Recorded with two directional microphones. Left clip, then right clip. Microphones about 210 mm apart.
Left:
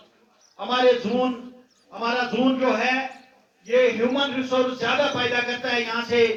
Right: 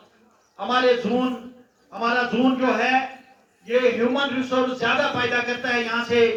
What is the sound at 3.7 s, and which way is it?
A man's voice, 55° right (ahead or behind).